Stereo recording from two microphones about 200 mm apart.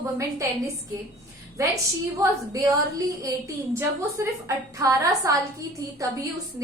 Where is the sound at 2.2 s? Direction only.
15° right (ahead or behind).